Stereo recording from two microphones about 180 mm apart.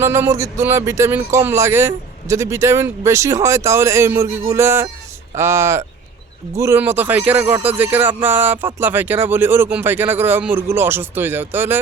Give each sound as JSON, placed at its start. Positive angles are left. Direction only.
{"t": 0.0, "sound": "speech", "side_deg": -15}